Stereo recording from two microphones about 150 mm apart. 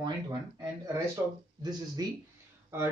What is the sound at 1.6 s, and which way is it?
Speech, 25° right (ahead or behind).